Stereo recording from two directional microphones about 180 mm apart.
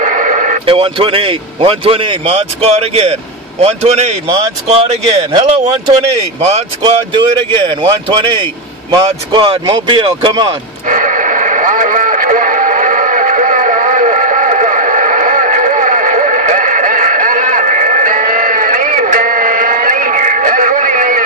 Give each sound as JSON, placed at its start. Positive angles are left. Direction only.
{"t": 0.0, "sound": "radio", "side_deg": -45}
{"t": 0.7, "sound": "speech", "side_deg": -30}
{"t": 10.9, "sound": "radio", "side_deg": -45}